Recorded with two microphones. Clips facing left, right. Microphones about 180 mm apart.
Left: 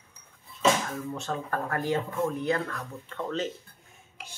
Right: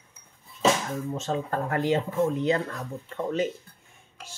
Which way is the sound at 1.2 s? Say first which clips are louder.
Right 3 dB; 20° right (ahead or behind).